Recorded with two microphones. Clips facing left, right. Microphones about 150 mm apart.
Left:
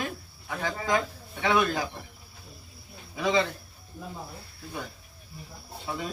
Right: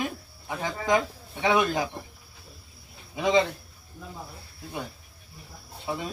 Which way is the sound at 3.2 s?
20° right (ahead or behind).